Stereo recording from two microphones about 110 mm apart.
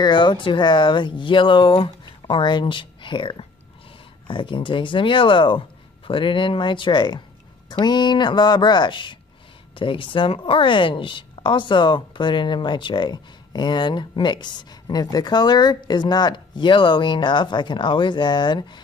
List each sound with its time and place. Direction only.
0.0 s a woman's voice: 45° left (ahead or behind)